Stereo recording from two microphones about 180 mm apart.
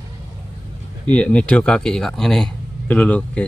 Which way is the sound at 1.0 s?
5° left (ahead or behind).